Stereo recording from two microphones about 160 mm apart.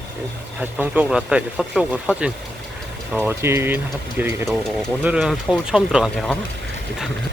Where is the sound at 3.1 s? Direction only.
10° right (ahead or behind).